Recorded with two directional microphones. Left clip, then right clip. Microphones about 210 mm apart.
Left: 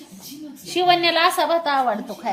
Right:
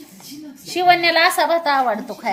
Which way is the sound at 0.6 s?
5° right (ahead or behind).